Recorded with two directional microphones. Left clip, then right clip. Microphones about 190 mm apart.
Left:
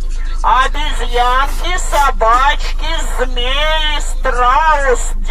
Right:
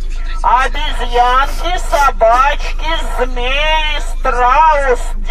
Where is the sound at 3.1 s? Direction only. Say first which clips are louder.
Left 1 dB; 35° right (ahead or behind).